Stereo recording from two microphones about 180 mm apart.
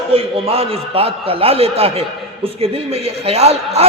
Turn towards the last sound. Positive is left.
turn(degrees=-35)  # may be behind; listen again after turning